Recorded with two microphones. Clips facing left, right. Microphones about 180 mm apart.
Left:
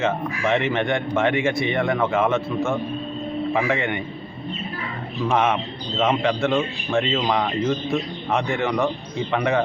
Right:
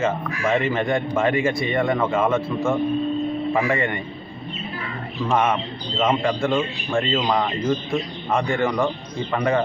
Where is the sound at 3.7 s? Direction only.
Centre (ahead or behind).